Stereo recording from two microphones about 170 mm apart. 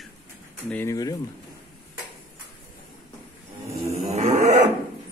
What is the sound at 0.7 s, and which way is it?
Speech, 15° left (ahead or behind).